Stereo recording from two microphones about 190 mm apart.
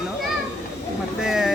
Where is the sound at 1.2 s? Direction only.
Centre (ahead or behind).